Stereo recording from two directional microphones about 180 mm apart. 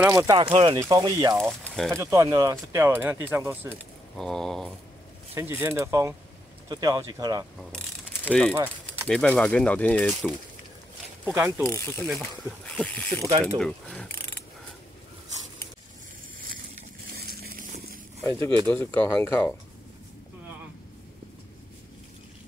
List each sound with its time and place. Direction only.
0.0 s speech: 20° right (ahead or behind)
0.5 s speech: 30° right (ahead or behind); by 3.8 s 10° right (ahead or behind)
4.2 s speech: centre (ahead or behind)
5.3 s speech: 15° right (ahead or behind)
7.7 s mechanisms: 5° left (ahead or behind)
9.0 s speech: 5° left (ahead or behind)
11.2 s speech: 10° right (ahead or behind)
11.6 s speech: 15° left (ahead or behind)
13.3 s speech: 20° right (ahead or behind)
13.6 s speech: 5° left (ahead or behind)
17.1 s a sound: 60° right (ahead or behind)
18.7 s speech: 10° left (ahead or behind)